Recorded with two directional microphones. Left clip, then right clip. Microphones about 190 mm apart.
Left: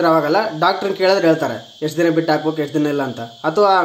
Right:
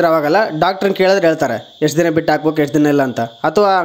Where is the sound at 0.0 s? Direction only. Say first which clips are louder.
Right 2 dB; 40° right (ahead or behind).